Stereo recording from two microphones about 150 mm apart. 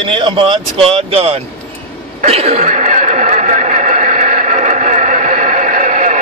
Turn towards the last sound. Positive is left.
turn(degrees=-55)  # may be behind; listen again after turning